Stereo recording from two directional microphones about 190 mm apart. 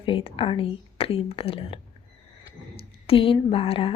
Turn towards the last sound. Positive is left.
turn(degrees=30)  # may be behind; listen again after turning